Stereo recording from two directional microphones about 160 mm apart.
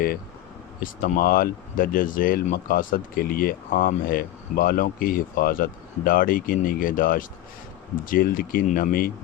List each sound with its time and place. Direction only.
0.8 s speech: 60° left (ahead or behind)